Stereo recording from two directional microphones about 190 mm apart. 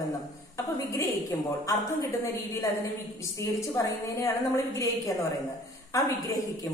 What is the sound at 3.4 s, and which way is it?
A woman's voice, 15° left (ahead or behind).